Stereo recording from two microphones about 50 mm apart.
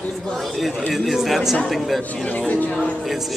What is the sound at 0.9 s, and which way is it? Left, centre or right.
Speech, centre.